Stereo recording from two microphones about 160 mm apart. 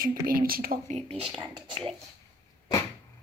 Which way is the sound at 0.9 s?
40° right (ahead or behind).